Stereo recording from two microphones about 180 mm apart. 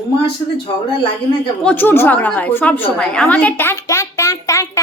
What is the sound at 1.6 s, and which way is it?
A woman's voice, 10° left (ahead or behind).